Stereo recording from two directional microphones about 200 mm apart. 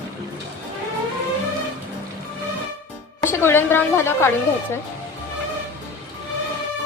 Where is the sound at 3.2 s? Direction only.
10° left (ahead or behind).